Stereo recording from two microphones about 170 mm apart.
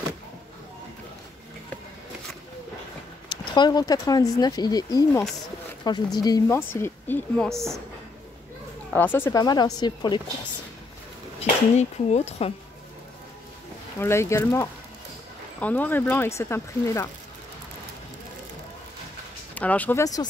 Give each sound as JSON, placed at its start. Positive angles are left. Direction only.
{"t": 3.3, "sound": "a woman's voice", "side_deg": 25}
{"t": 8.9, "sound": "speech", "side_deg": 10}
{"t": 11.3, "sound": "speech", "side_deg": 40}
{"t": 13.9, "sound": "a woman's voice", "side_deg": 15}
{"t": 19.5, "sound": "a woman's voice", "side_deg": 10}